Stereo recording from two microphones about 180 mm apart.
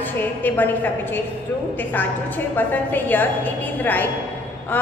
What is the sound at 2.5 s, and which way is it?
A woman's voice, 10° left (ahead or behind).